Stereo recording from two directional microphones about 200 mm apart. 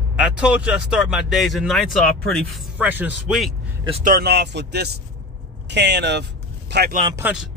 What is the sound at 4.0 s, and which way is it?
Speech, 45° right (ahead or behind).